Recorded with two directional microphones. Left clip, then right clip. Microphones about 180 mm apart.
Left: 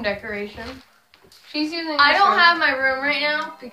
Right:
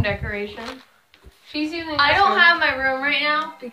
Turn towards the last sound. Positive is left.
turn(degrees=10)  # may be behind; listen again after turning